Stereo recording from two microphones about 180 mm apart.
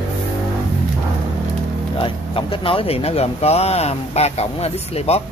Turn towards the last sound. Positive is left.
turn(degrees=35)  # may be behind; listen again after turning